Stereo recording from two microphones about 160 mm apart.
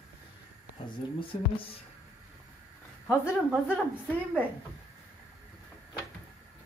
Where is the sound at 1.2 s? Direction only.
35° left (ahead or behind).